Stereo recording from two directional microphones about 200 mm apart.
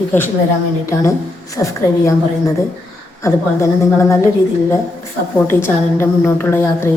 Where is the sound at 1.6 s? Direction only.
15° left (ahead or behind).